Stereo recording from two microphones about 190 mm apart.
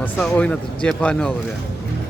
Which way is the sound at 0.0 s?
5° left (ahead or behind).